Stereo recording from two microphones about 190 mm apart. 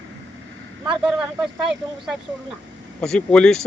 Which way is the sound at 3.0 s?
5° left (ahead or behind).